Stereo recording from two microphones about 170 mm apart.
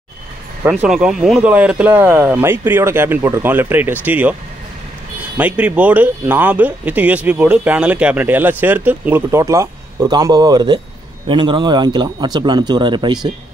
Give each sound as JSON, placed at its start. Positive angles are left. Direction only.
{"t": 0.7, "sound": "speech", "side_deg": -5}
{"t": 5.4, "sound": "speech", "side_deg": -10}